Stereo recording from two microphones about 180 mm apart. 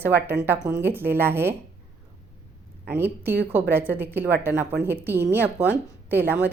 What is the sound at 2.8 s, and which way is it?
Speech, 10° right (ahead or behind).